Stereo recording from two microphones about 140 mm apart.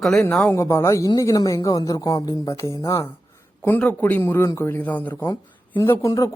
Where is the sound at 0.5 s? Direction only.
20° left (ahead or behind).